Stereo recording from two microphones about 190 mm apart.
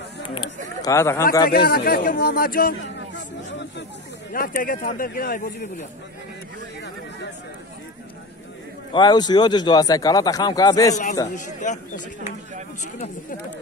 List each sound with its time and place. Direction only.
0.8 s speech: 15° left (ahead or behind)
1.5 s speech: 55° left (ahead or behind)
2.8 s a sound: 70° left (ahead or behind)
4.3 s speech: 50° left (ahead or behind)
8.9 s a man's voice: 25° left (ahead or behind)
11.3 s speech: 40° left (ahead or behind)